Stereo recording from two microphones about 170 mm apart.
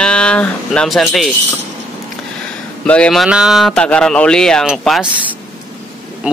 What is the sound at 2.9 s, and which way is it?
Speech, 5° left (ahead or behind).